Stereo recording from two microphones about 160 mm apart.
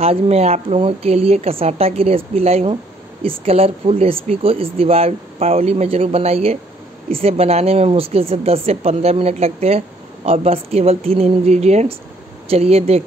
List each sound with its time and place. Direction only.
0.0 s speech: 40° right (ahead or behind)